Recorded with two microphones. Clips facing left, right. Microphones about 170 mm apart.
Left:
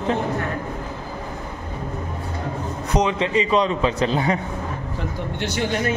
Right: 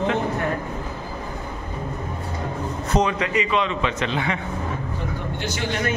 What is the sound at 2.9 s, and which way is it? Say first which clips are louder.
A man's voice: left 2 dB; 25° left (ahead or behind).